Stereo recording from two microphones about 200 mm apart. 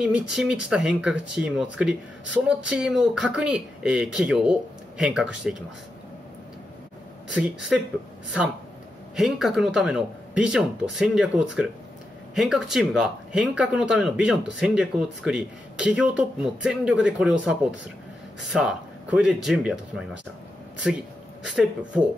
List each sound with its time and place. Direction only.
0.0 s speech: 5° right (ahead or behind)
9.1 s speech: centre (ahead or behind)
20.9 s speech: centre (ahead or behind)